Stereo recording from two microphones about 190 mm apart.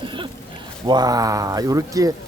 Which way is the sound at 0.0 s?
25° right (ahead or behind).